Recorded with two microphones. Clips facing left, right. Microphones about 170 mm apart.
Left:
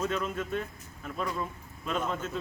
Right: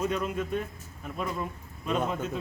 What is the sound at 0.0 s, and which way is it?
Speech, 10° right (ahead or behind).